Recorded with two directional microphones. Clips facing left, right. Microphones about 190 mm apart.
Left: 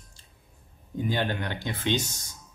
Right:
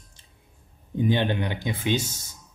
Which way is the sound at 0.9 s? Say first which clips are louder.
Right 5 dB; 20° right (ahead or behind).